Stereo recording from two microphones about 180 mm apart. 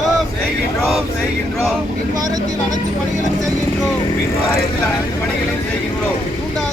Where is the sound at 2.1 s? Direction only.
20° right (ahead or behind).